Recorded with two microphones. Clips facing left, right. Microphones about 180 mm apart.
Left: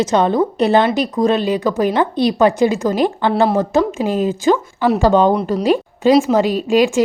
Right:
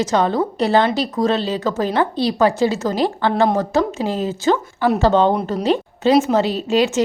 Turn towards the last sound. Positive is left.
turn(degrees=10)  # may be behind; listen again after turning